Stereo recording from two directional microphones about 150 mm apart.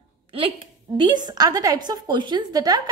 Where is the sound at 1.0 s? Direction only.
25° right (ahead or behind).